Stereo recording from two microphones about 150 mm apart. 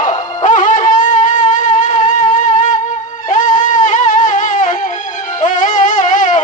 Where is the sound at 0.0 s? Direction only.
55° left (ahead or behind).